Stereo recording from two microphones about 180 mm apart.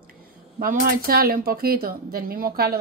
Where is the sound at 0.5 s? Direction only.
55° right (ahead or behind).